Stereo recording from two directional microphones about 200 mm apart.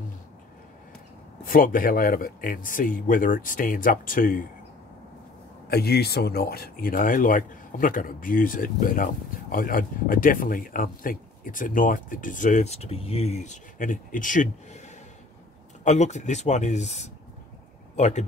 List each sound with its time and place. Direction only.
1.4 s speech: 45° left (ahead or behind)
5.7 s speech: 50° left (ahead or behind)
15.8 s speech: 35° left (ahead or behind)